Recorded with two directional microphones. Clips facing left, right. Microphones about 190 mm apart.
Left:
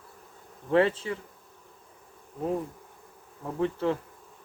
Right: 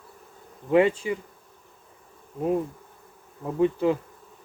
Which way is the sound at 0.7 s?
15° right (ahead or behind).